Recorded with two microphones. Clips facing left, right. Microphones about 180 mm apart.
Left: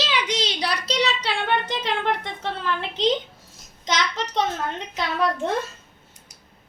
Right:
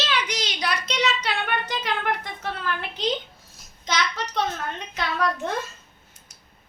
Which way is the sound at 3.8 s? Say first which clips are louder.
Left 2 dB; 20° left (ahead or behind).